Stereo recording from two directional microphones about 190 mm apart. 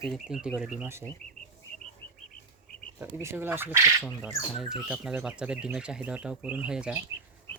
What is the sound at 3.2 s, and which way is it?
Speech, 10° right (ahead or behind).